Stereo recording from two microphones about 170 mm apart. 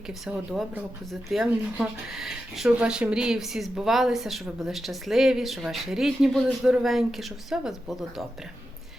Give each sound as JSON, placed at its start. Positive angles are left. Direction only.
{"t": 0.1, "sound": "speech", "side_deg": -5}